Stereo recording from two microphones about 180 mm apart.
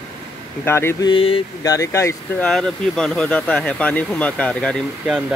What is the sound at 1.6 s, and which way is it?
Speech, 15° left (ahead or behind).